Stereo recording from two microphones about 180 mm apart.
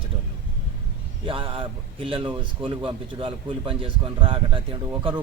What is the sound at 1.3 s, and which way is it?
Speech, 30° right (ahead or behind).